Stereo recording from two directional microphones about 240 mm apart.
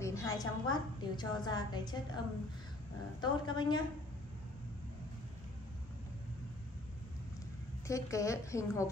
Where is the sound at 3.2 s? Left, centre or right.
Centre.